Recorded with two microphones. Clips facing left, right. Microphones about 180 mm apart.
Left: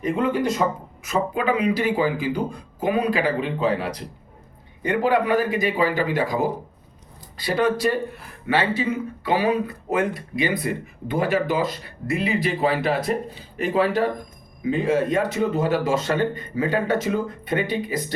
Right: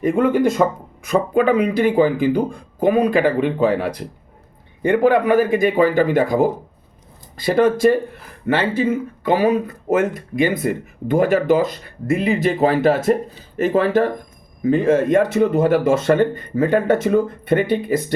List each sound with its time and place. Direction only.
0.0 s speech: 50° right (ahead or behind)